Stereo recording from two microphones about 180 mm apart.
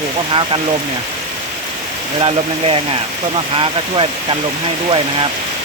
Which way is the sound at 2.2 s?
30° right (ahead or behind).